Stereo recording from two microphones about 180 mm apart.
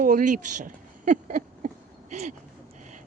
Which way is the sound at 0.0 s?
50° right (ahead or behind).